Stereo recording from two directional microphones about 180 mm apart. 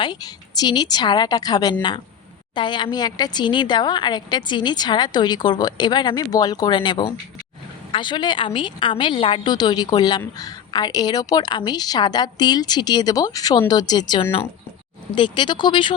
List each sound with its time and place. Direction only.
0.0 s a woman's voice: 25° left (ahead or behind)